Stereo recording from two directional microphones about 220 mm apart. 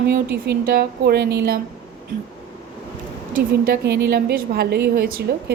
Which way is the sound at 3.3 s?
40° right (ahead or behind).